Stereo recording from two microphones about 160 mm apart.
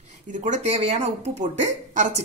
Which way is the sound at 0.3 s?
50° right (ahead or behind).